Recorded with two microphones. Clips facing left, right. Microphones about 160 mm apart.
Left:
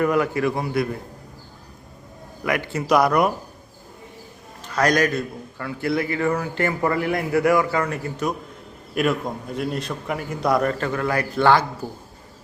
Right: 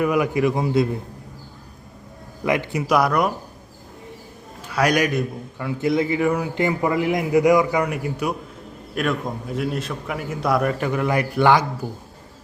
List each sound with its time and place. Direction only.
0.0 s a man's voice: 10° right (ahead or behind)
2.4 s a man's voice: 20° right (ahead or behind)
2.8 s a man's voice: centre (ahead or behind)
4.6 s a man's voice: 10° right (ahead or behind)
9.0 s a man's voice: centre (ahead or behind); by 11.6 s 15° right (ahead or behind)